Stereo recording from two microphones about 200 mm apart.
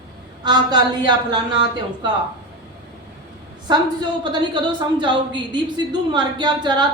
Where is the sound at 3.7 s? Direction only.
20° right (ahead or behind).